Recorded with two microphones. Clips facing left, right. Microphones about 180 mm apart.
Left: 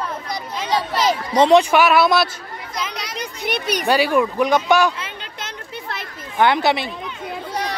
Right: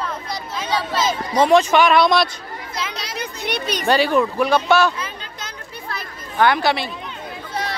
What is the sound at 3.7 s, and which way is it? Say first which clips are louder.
Speech: even; 10° left (ahead or behind).